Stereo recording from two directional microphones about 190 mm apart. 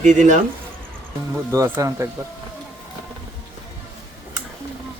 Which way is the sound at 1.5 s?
15° right (ahead or behind).